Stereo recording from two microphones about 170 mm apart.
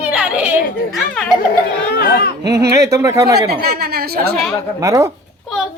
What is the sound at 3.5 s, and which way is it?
Speech, 70° right (ahead or behind).